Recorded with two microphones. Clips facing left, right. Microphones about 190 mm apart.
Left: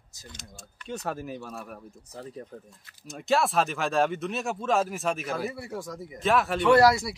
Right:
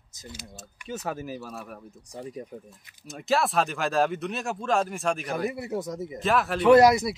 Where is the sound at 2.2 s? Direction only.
15° right (ahead or behind).